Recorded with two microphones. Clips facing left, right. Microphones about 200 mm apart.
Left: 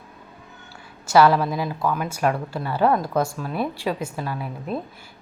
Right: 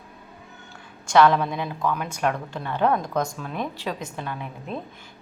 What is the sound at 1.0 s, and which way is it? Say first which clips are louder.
A woman's voice: left 1 dB; 5° left (ahead or behind).